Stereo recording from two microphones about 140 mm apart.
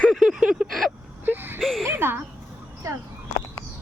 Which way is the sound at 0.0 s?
Centre (ahead or behind).